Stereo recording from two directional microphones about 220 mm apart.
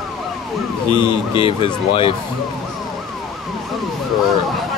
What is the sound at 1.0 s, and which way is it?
Speech, 20° left (ahead or behind).